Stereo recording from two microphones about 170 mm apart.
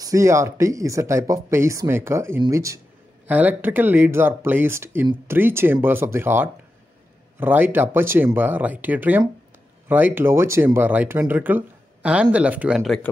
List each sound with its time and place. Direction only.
0.0 s speech: 20° right (ahead or behind); by 13.1 s centre (ahead or behind)